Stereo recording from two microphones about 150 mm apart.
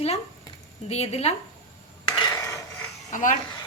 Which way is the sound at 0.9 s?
45° left (ahead or behind).